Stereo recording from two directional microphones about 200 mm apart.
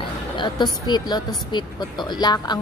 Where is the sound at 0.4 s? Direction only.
20° left (ahead or behind).